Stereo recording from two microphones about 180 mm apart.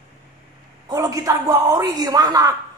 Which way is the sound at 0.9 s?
20° right (ahead or behind).